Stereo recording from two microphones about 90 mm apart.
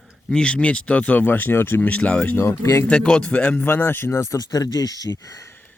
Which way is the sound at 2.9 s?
15° left (ahead or behind).